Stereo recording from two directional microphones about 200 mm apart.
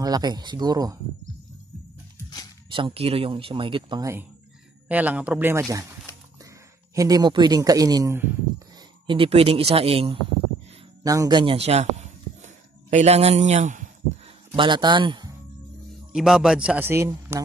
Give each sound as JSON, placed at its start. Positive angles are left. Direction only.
{"t": 0.0, "sound": "speech", "side_deg": -20}
{"t": 2.7, "sound": "speech", "side_deg": -25}
{"t": 4.8, "sound": "speech", "side_deg": -5}
{"t": 7.0, "sound": "speech", "side_deg": -20}
{"t": 9.0, "sound": "a man's voice", "side_deg": -25}
{"t": 14.5, "sound": "speech", "side_deg": -25}
{"t": 16.1, "sound": "a man's voice", "side_deg": -5}